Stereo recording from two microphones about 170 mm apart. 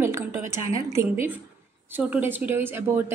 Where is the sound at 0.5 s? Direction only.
15° right (ahead or behind).